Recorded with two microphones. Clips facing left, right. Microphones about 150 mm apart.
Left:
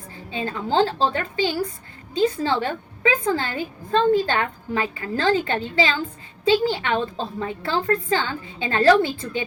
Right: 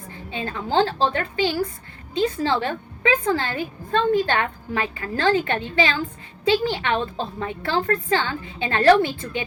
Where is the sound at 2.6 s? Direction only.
25° left (ahead or behind).